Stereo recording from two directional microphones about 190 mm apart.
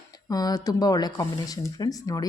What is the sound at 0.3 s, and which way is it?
Speech, 20° left (ahead or behind).